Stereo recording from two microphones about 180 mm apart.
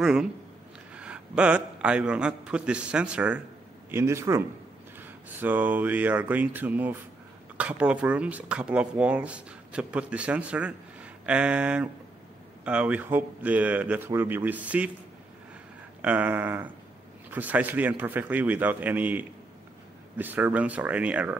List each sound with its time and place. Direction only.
0.0 s a man's voice: 5° right (ahead or behind)
16.0 s speech: 10° right (ahead or behind)